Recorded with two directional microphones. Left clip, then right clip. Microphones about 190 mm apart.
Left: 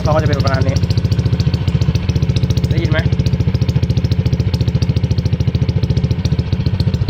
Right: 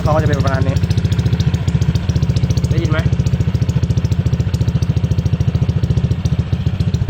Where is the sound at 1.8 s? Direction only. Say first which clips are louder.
Left 1 dB; 10° left (ahead or behind).